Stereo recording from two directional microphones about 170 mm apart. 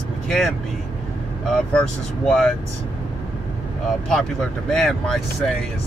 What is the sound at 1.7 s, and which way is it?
Speech, 5° left (ahead or behind).